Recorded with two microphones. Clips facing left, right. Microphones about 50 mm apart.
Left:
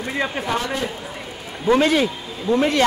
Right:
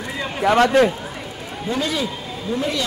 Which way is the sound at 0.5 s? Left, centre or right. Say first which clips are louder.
Right 9 dB; right.